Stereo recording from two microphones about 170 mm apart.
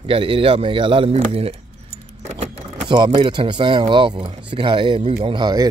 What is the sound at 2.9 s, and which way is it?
Speech, 25° right (ahead or behind).